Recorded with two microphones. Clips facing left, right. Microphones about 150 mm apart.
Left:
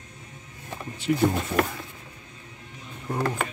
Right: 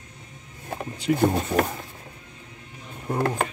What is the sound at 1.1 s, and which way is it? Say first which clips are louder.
Speech: right 2 dB; 45° right (ahead or behind).